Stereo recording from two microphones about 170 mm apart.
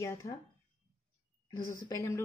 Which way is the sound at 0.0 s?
15° left (ahead or behind).